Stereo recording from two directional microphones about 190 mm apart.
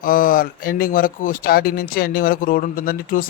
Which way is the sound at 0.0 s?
50° left (ahead or behind).